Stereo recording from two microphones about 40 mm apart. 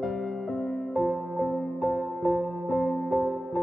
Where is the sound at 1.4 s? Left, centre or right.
Left.